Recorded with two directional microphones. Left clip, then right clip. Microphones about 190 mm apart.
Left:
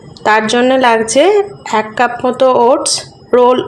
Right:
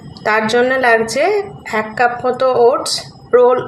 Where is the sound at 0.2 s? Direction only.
35° left (ahead or behind).